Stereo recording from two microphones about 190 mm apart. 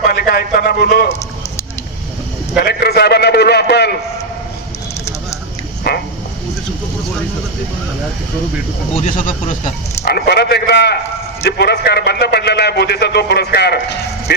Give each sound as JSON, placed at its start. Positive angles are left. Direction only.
{"t": 0.1, "sound": "a man's voice", "side_deg": 55}
{"t": 2.6, "sound": "a man's voice", "side_deg": 55}
{"t": 9.0, "sound": "speech", "side_deg": 40}
{"t": 10.0, "sound": "a man's voice", "side_deg": 55}